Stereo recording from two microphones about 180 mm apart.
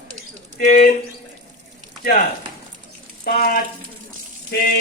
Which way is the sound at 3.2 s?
55° left (ahead or behind).